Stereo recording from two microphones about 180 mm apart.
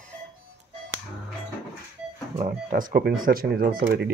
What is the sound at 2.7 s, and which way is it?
Speech, 50° right (ahead or behind).